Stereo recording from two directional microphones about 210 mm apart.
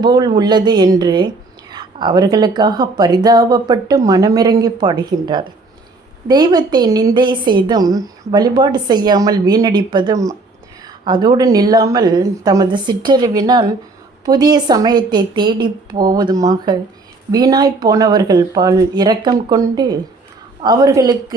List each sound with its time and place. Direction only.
0.0 s a woman's voice: 20° right (ahead or behind)